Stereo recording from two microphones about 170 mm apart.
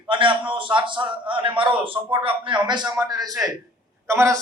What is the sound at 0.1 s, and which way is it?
A man's voice, 30° right (ahead or behind).